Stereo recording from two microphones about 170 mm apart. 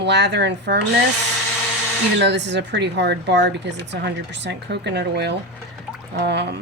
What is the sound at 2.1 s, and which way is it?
A woman's voice, 90° right.